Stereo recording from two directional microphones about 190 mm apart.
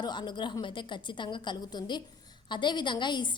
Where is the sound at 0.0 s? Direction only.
25° left (ahead or behind).